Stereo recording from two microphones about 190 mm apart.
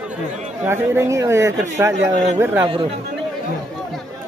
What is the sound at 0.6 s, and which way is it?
A man's voice, 10° right (ahead or behind).